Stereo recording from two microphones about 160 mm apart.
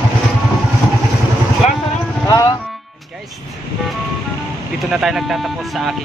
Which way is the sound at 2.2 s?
20° left (ahead or behind).